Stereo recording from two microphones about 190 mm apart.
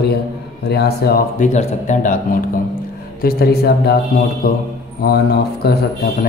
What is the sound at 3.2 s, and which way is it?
A man's voice, 55° left (ahead or behind).